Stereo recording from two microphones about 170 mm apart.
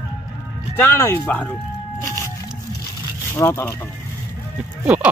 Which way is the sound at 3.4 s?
15° left (ahead or behind).